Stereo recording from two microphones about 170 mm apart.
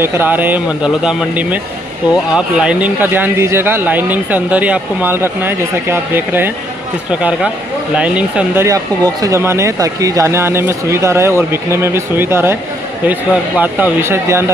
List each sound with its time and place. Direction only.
0.0 s speech: 15° right (ahead or behind)
8.6 s speech: 20° right (ahead or behind)